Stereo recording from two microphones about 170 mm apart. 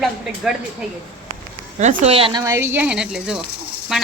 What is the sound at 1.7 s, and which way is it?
Speech, 40° right (ahead or behind).